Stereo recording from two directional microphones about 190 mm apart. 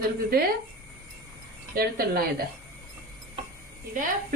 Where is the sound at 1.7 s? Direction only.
50° right (ahead or behind).